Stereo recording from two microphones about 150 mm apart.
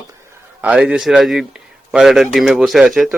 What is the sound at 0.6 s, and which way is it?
Speech, 10° right (ahead or behind).